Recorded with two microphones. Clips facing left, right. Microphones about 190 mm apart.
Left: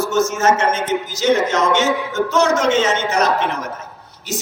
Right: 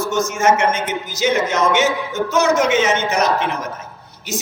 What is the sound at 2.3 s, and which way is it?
Speech, 10° right (ahead or behind).